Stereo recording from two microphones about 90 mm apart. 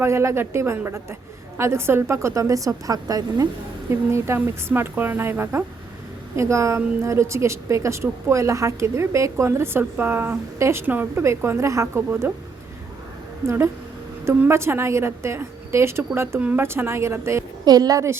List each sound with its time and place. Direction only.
0.0 s a woman's voice: 30° right (ahead or behind)
3.9 s a woman's voice: 30° right (ahead or behind)
13.4 s a woman's voice: 30° right (ahead or behind)
17.7 s a woman's voice: 45° right (ahead or behind)